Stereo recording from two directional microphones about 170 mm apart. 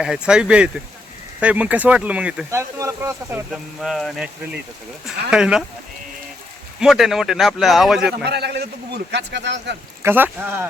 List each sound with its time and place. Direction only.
0.0 s speech: 5° right (ahead or behind)
3.5 s speech: centre (ahead or behind)
6.7 s speech: centre (ahead or behind)
8.2 s a man's voice: 75° right (ahead or behind); by 9.7 s 90° right
10.0 s speech: 10° right (ahead or behind)